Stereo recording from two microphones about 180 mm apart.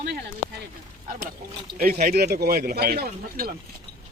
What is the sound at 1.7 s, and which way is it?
Speech, 50° right (ahead or behind).